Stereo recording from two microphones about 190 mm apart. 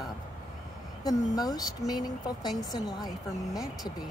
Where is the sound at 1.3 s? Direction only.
20° left (ahead or behind).